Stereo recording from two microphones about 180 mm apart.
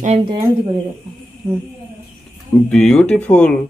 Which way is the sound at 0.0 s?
30° right (ahead or behind).